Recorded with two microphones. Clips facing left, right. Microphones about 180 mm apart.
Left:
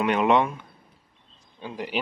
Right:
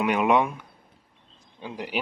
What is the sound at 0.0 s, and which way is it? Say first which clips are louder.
Speech: left 1 dB; 10° right (ahead or behind).